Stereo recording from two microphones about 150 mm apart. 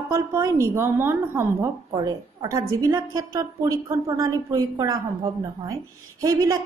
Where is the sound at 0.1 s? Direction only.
20° right (ahead or behind).